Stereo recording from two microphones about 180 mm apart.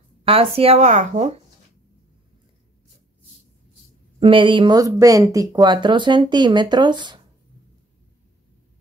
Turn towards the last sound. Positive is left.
turn(degrees=-25)  # may be behind; listen again after turning